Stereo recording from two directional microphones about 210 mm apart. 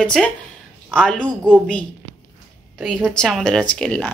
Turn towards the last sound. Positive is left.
turn(degrees=5)  # may be behind; listen again after turning